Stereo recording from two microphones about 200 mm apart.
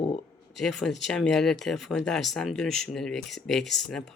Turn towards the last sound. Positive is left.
turn(degrees=0)  # may be behind; listen again after turning